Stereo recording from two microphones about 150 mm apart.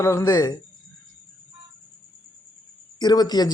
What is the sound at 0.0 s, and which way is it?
Speech, 20° left (ahead or behind).